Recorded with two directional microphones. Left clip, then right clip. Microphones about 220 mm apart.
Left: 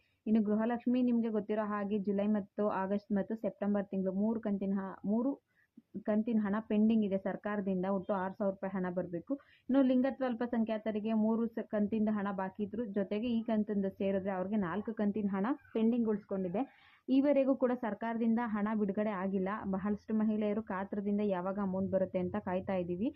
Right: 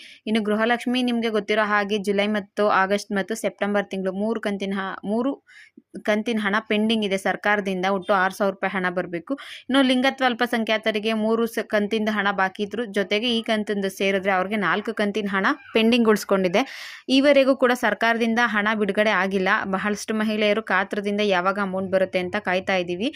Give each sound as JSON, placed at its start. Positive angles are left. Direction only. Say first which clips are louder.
{"t": 0.3, "sound": "speech", "louder": "right 12 dB", "side_deg": -20}
{"t": 6.1, "sound": "speech", "louder": "right 12 dB", "side_deg": -20}
{"t": 17.1, "sound": "speech", "louder": "right 13 dB", "side_deg": -20}